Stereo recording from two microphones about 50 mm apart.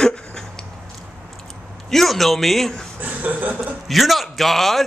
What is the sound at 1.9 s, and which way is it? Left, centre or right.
Speech, centre.